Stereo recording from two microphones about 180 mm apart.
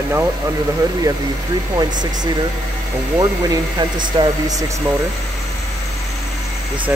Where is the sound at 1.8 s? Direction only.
25° right (ahead or behind).